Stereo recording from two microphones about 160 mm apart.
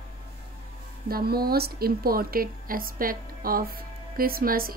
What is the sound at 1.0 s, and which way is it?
A woman's voice, 70° right (ahead or behind).